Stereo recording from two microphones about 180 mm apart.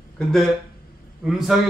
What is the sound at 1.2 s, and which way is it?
Speech, centre (ahead or behind).